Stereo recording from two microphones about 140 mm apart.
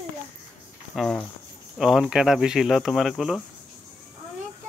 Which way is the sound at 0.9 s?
Centre (ahead or behind).